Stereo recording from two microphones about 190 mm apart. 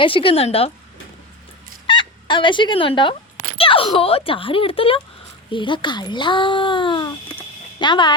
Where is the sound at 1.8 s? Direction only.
25° left (ahead or behind).